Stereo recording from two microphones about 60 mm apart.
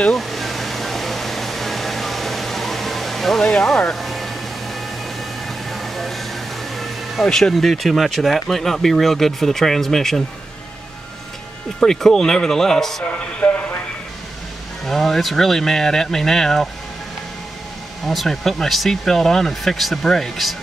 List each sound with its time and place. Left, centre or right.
0.1 s air conditioning: centre
5.7 s a sound: centre
7.5 s speech: centre
11.8 s speech: centre
13.4 s a sound: centre
14.9 s speech: centre
18.0 s speech: centre